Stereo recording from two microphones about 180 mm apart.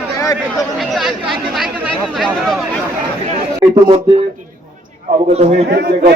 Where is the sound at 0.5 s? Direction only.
Centre (ahead or behind).